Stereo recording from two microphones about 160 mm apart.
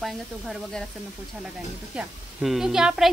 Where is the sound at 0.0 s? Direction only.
Centre (ahead or behind).